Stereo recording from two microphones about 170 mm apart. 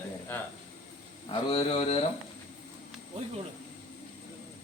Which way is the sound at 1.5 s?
35° left (ahead or behind).